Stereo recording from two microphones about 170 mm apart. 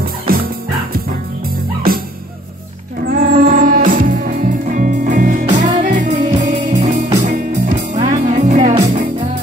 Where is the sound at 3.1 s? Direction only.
50° right (ahead or behind).